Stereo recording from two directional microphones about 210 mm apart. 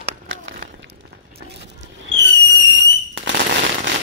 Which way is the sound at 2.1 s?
65° right (ahead or behind).